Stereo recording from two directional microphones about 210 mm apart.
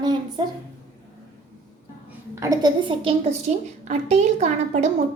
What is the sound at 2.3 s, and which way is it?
A woman's voice, 15° right (ahead or behind).